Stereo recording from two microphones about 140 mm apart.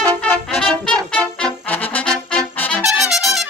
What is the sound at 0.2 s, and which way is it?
Brass instrument, 5° left (ahead or behind).